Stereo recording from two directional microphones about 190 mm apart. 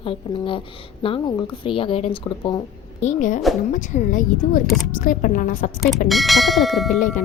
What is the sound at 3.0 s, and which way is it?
A woman's voice, 40° left (ahead or behind).